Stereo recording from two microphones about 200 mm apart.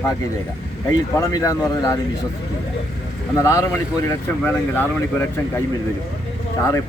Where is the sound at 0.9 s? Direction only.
15° left (ahead or behind).